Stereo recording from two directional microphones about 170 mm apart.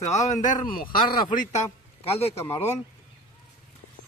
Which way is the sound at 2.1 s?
35° left (ahead or behind).